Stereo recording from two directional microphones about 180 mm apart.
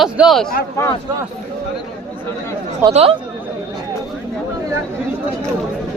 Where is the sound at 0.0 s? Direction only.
Centre (ahead or behind).